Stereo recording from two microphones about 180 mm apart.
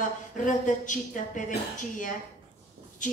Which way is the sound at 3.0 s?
45° left (ahead or behind).